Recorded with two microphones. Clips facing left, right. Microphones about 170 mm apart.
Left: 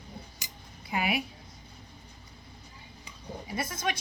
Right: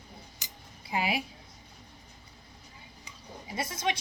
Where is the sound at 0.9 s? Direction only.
30° right (ahead or behind).